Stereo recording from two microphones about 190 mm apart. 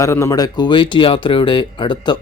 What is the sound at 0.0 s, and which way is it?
A man's voice, 15° left (ahead or behind).